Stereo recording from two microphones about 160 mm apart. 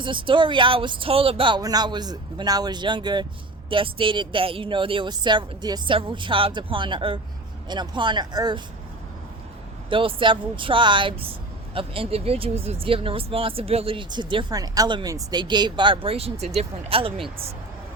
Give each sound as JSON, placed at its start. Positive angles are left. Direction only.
{"t": 0.0, "sound": "speech", "side_deg": -30}
{"t": 9.9, "sound": "speech", "side_deg": -35}